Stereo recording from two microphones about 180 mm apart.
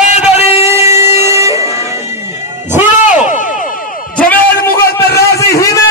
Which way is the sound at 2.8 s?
45° left (ahead or behind).